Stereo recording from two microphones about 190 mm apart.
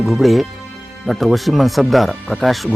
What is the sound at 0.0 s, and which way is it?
Speech, centre (ahead or behind).